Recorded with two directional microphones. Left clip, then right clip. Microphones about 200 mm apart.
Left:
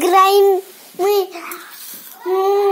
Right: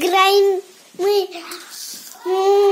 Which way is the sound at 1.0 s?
15° left (ahead or behind).